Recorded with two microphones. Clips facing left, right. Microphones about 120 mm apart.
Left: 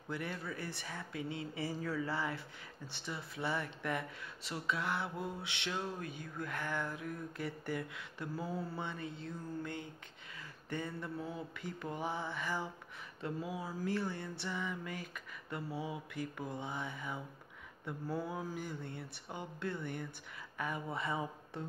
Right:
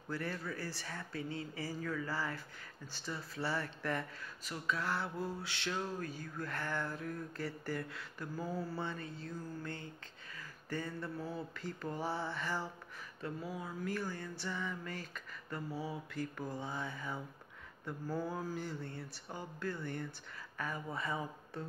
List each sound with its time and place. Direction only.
0.1 s speech: 20° left (ahead or behind)
18.1 s speech: 5° left (ahead or behind); by 21.6 s 25° left (ahead or behind)